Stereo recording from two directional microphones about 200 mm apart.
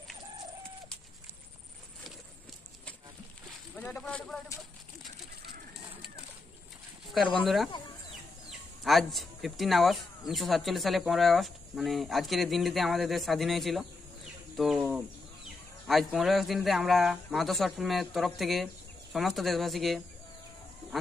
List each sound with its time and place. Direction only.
3.8 s speech: 5° left (ahead or behind)
7.2 s speech: centre (ahead or behind)